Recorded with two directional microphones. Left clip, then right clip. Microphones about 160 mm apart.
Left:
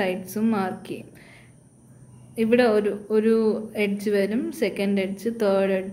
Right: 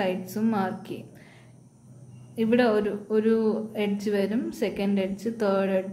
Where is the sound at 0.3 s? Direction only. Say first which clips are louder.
Left 2 dB; 25° left (ahead or behind).